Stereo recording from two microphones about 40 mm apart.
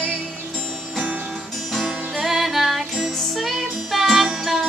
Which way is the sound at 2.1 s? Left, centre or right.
Centre.